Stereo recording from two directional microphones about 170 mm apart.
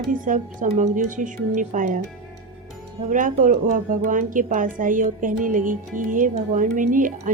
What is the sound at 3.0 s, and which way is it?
Speech, 50° right (ahead or behind).